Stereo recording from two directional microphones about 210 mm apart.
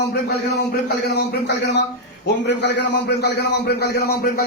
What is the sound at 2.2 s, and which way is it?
Speech, 55° left (ahead or behind).